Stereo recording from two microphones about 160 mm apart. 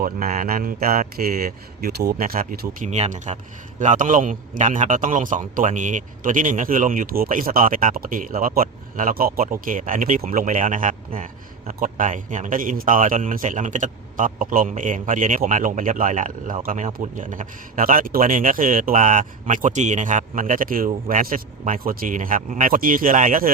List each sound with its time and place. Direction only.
0.0 s a man's voice: 60° right (ahead or behind)
2.7 s a man's voice: 45° right (ahead or behind)